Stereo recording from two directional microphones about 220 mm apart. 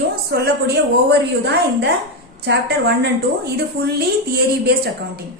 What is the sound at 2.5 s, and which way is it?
Speech, 50° right (ahead or behind).